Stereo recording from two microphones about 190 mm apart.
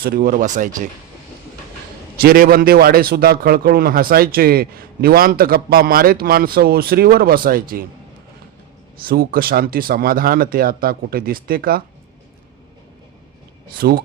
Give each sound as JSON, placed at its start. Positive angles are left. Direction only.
{"t": 0.0, "sound": "speech", "side_deg": -50}
{"t": 2.2, "sound": "speech", "side_deg": -50}
{"t": 9.0, "sound": "speech", "side_deg": -50}
{"t": 13.7, "sound": "speech", "side_deg": -55}